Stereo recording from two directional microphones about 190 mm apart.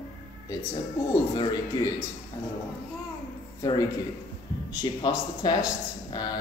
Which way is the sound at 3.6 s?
20° left (ahead or behind).